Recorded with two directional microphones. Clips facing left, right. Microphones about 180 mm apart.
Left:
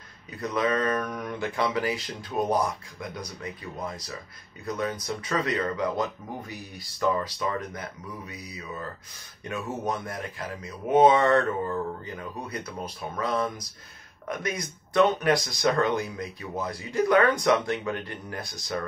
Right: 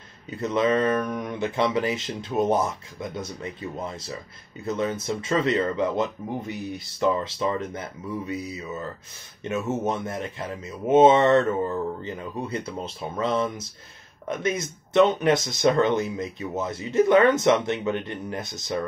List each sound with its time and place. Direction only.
0.4 s speech: 25° right (ahead or behind)